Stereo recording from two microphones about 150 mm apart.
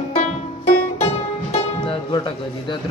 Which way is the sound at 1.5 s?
35° left (ahead or behind).